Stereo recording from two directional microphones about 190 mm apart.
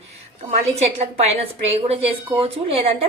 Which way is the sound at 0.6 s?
35° right (ahead or behind).